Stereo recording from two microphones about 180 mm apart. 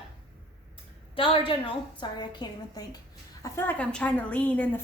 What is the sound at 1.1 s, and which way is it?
A woman's voice, 30° left (ahead or behind).